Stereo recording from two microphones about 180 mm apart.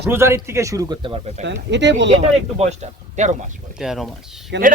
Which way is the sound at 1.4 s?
80° right.